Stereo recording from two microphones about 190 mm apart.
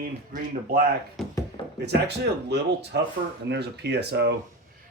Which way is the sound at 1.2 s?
Centre (ahead or behind).